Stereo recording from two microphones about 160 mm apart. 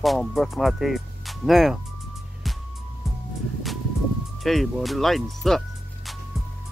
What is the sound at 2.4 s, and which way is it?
Music, centre (ahead or behind).